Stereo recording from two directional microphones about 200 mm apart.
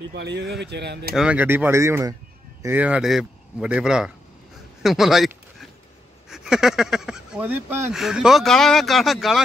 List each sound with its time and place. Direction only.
0.1 s speech: 55° right (ahead or behind)
1.1 s speech: 5° right (ahead or behind)